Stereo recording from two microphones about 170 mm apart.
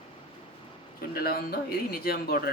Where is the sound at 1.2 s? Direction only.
65° left (ahead or behind).